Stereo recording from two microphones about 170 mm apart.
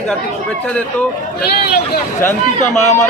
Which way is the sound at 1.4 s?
70° left (ahead or behind).